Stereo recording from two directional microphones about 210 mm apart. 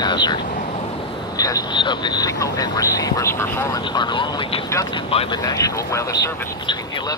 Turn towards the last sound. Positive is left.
turn(degrees=15)  # may be behind; listen again after turning